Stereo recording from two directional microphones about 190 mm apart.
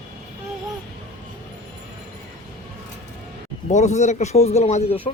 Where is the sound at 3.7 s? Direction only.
40° left (ahead or behind).